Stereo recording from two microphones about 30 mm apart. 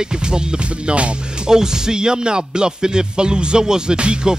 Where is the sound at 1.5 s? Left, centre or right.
Right.